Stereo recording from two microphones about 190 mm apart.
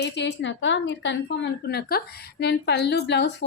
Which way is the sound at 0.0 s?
65° left (ahead or behind).